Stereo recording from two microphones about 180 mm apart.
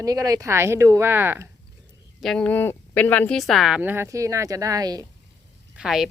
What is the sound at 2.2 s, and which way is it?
Speech, 5° left (ahead or behind).